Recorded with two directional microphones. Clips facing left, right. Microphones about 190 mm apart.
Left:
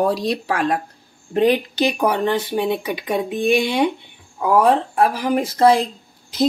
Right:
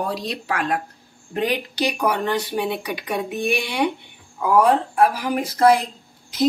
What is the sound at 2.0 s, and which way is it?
Speech, 30° left (ahead or behind).